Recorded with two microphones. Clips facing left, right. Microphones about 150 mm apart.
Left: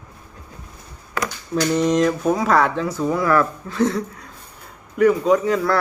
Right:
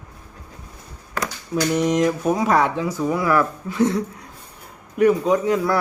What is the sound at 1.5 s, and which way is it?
Speech, 10° right (ahead or behind).